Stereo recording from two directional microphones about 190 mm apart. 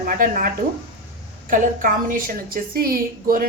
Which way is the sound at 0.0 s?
50° right (ahead or behind).